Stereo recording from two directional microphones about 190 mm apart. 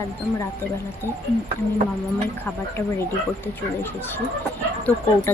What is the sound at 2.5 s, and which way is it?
Speech, 10° left (ahead or behind).